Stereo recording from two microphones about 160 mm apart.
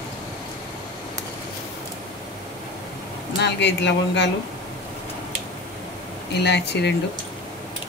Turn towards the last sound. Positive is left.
turn(degrees=90)